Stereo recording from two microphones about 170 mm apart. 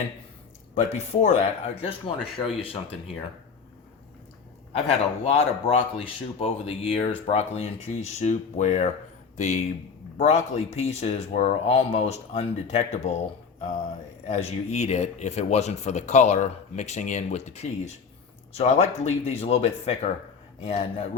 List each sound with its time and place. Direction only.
1.2 s speech: 40° left (ahead or behind)
4.7 s speech: 35° left (ahead or behind)
14.3 s speech: 40° left (ahead or behind)